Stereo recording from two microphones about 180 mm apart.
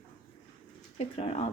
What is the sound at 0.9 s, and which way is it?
Speech, 35° left (ahead or behind).